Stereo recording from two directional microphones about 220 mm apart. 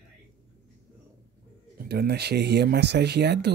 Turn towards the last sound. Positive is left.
turn(degrees=-50)  # may be behind; listen again after turning